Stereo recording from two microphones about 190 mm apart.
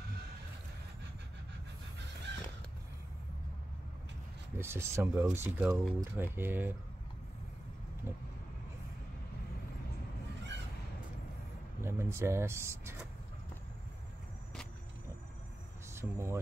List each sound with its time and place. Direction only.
2.3 s a sound: 65° right (ahead or behind)
4.6 s speech: 15° right (ahead or behind)
11.8 s speech: 15° right (ahead or behind)
15.9 s speech: 15° right (ahead or behind)